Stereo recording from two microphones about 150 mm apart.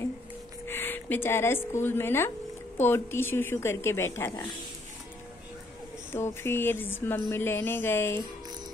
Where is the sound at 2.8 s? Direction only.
15° left (ahead or behind).